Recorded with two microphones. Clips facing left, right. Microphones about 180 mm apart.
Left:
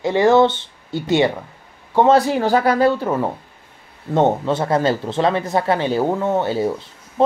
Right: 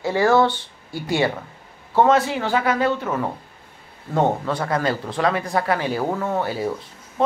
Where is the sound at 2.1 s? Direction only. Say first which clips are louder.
Left 4 dB; 40° left (ahead or behind).